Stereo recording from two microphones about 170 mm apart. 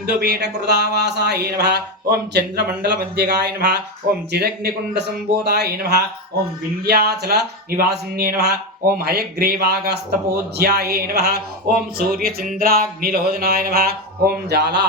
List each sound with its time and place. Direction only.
0.0 s speech: 70° right (ahead or behind)